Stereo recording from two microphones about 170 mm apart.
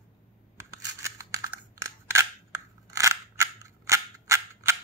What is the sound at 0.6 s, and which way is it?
Scissors, 15° right (ahead or behind).